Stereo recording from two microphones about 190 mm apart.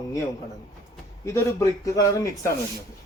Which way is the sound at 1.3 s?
15° left (ahead or behind).